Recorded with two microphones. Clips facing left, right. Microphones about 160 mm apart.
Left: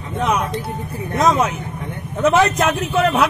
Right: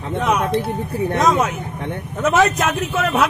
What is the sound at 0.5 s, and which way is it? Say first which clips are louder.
Speech: right 5 dB; 65° right (ahead or behind).